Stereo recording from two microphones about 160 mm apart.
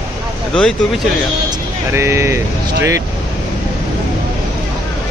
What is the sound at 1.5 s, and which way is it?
Speech, 15° right (ahead or behind).